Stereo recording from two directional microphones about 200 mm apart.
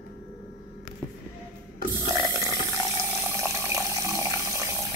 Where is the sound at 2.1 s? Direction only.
15° right (ahead or behind).